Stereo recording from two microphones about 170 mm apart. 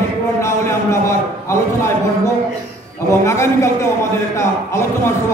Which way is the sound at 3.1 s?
15° left (ahead or behind).